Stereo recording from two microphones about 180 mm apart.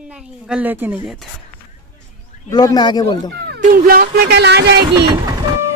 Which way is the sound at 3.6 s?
50° right (ahead or behind).